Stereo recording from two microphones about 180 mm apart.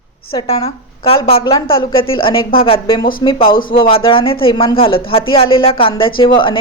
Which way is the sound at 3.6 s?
50° left (ahead or behind).